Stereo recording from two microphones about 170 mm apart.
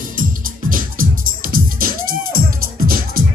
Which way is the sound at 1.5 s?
60° right (ahead or behind).